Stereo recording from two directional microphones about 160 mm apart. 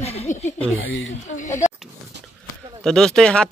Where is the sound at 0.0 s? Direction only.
40° left (ahead or behind).